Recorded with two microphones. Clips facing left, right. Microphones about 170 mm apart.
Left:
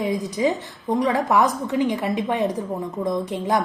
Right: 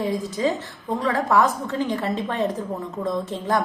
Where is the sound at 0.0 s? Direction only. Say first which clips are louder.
Left 1 dB; 15° left (ahead or behind).